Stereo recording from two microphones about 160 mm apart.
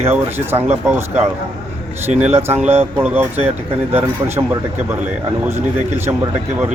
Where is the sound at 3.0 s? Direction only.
10° right (ahead or behind).